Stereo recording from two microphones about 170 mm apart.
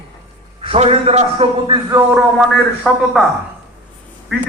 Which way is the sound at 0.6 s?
35° right (ahead or behind).